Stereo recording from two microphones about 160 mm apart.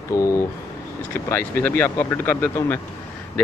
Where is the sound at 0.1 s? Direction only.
20° left (ahead or behind).